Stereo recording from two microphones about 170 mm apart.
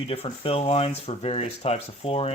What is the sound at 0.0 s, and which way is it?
Speech, 35° left (ahead or behind).